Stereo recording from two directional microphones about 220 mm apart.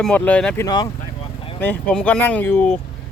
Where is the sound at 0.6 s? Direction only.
15° left (ahead or behind).